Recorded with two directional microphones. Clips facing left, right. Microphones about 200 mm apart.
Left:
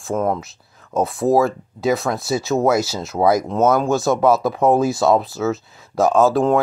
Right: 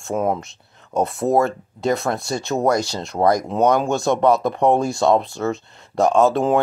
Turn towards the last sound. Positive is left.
turn(degrees=0)  # may be behind; listen again after turning